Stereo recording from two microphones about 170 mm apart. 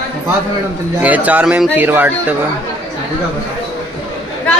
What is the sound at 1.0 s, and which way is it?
Speech, 10° right (ahead or behind).